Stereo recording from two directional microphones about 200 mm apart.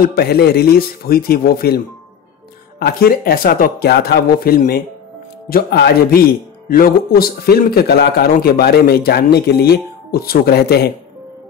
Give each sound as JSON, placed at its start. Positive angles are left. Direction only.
{"t": 0.0, "sound": "a man's voice", "side_deg": 50}
{"t": 2.8, "sound": "a man's voice", "side_deg": 50}